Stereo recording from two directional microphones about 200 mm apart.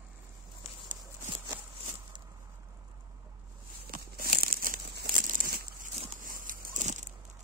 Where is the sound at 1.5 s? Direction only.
10° right (ahead or behind).